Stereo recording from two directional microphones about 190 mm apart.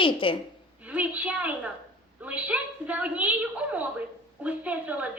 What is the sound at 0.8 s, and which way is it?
A woman's voice, 10° right (ahead or behind).